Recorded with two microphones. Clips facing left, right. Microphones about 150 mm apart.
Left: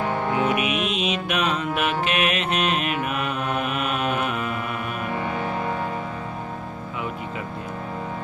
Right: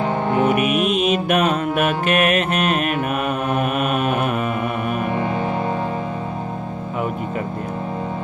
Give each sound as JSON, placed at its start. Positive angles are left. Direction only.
{"t": 0.3, "sound": "mantra", "side_deg": -45}